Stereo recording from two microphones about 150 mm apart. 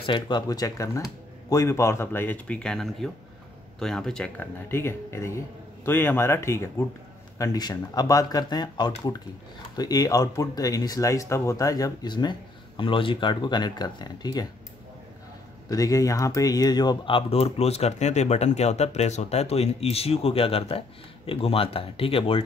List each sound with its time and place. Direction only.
0.0 s speech: 30° left (ahead or behind); by 4.5 s 5° left (ahead or behind)
4.6 s speech: 15° left (ahead or behind)
15.7 s speech: 25° left (ahead or behind); by 22.4 s 40° left (ahead or behind)